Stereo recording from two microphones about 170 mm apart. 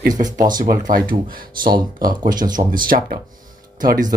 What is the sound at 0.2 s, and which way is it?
Speech, 60° right (ahead or behind).